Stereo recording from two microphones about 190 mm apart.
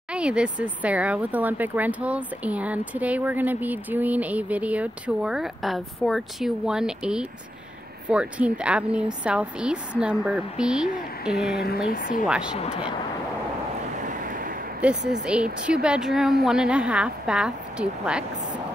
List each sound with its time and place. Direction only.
0.1 s speech: 5° right (ahead or behind)
11.5 s speech: 55° left (ahead or behind)
14.0 s vehicle: 45° right (ahead or behind)
14.8 s speech: 5° right (ahead or behind)